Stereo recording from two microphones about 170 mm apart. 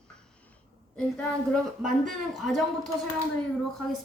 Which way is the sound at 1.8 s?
Centre (ahead or behind).